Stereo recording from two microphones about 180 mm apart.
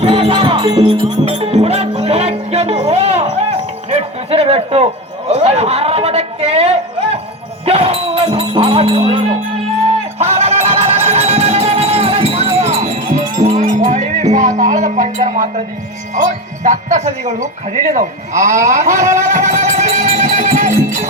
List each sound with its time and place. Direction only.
0.0 s music: 35° right (ahead or behind)
5.3 s a sound: 35° right (ahead or behind)
7.6 s wind chime: 35° right (ahead or behind)
10.2 s music: 35° right (ahead or behind)
16.1 s a man's voice: 45° right (ahead or behind)
19.2 s music: 45° right (ahead or behind)